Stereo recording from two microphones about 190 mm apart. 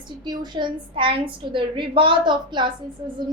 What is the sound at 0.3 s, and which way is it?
A woman's voice, 25° right (ahead or behind).